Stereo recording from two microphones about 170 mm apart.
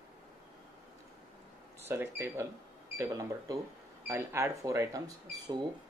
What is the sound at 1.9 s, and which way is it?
Speech, 15° right (ahead or behind).